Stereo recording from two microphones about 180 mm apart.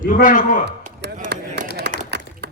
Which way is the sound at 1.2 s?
55° right (ahead or behind).